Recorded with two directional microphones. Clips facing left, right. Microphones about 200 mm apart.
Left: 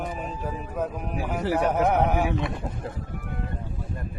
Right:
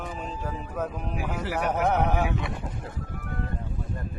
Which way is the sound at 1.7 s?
10° left (ahead or behind).